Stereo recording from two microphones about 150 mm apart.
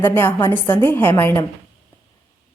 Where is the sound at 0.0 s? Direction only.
15° left (ahead or behind).